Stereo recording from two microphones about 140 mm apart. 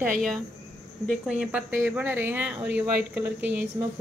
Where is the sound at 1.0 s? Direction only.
5° right (ahead or behind).